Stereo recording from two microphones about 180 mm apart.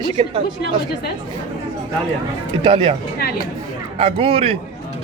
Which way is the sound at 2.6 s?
30° right (ahead or behind).